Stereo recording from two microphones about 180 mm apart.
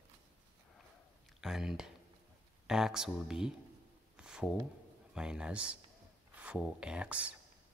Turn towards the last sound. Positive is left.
turn(degrees=-5)  # may be behind; listen again after turning